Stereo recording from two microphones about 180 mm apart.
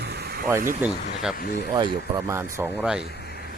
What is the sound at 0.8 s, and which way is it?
Speech, 10° right (ahead or behind).